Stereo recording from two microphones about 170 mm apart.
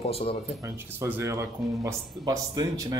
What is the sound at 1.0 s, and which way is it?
Speech, 15° right (ahead or behind).